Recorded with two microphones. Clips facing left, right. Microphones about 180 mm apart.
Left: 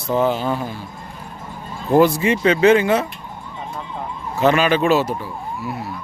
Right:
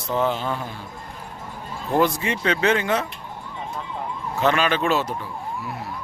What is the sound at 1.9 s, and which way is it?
A man's voice, 5° left (ahead or behind).